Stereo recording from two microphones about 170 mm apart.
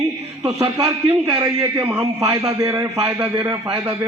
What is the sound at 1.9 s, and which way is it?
A man's voice, 15° right (ahead or behind).